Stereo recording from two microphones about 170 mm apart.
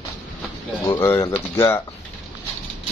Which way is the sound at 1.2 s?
25° left (ahead or behind).